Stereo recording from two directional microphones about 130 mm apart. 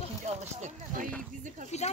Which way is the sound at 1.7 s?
60° left (ahead or behind).